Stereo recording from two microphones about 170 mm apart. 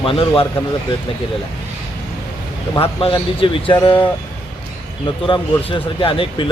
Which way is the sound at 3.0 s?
30° left (ahead or behind).